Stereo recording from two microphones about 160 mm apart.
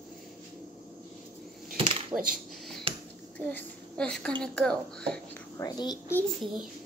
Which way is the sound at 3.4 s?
10° left (ahead or behind).